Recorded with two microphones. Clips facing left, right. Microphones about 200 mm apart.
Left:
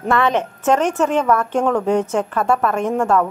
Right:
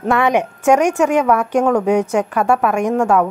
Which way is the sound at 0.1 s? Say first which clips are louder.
Right 2 dB; 15° right (ahead or behind).